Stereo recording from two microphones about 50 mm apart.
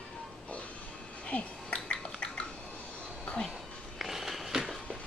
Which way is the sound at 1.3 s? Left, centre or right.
Left.